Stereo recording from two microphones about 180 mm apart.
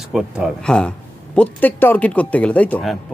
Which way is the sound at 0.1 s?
Centre (ahead or behind).